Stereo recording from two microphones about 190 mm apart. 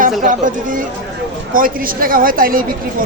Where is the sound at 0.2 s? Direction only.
45° right (ahead or behind).